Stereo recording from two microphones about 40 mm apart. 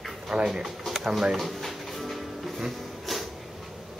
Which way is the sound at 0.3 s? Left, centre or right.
Centre.